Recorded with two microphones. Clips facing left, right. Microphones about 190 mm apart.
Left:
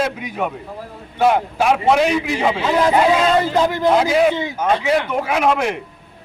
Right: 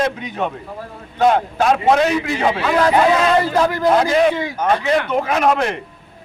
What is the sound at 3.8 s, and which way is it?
A man's voice, 5° left (ahead or behind).